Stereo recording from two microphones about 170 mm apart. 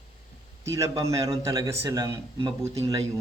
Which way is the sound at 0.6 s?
20° right (ahead or behind).